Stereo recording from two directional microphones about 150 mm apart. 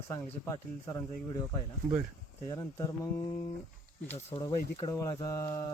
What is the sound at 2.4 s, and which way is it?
Speech, 25° left (ahead or behind).